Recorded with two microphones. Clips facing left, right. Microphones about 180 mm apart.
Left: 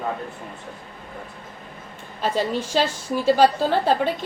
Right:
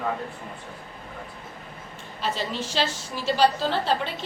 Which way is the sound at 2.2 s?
50° left (ahead or behind).